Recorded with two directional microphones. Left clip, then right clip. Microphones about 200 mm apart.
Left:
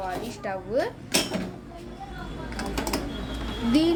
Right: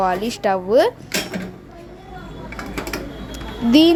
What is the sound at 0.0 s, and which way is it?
Speech, 45° right (ahead or behind).